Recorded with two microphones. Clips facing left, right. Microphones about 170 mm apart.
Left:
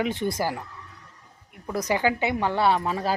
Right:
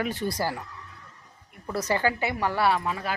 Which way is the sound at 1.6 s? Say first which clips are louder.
Left 2 dB; 15° left (ahead or behind).